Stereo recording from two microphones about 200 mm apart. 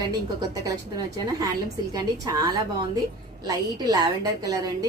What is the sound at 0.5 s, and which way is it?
A woman's voice, 20° right (ahead or behind).